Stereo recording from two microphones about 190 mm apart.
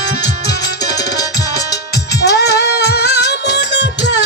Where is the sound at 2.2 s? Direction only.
60° left (ahead or behind).